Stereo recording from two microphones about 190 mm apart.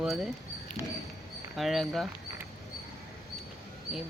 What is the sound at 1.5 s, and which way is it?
Speech, centre (ahead or behind).